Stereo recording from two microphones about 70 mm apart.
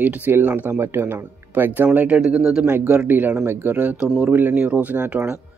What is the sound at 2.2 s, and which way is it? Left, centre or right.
Speech, centre.